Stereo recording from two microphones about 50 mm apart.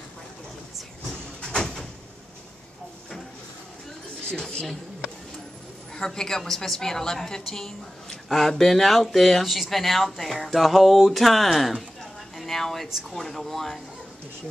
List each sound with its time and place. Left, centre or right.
1.4 s door: centre
4.3 s a woman's voice: centre
5.9 s a woman's voice: centre